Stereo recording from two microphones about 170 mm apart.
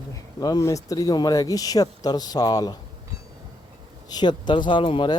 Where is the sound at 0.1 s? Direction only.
20° left (ahead or behind).